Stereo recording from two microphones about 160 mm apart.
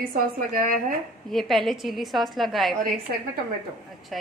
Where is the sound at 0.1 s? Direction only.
60° right (ahead or behind).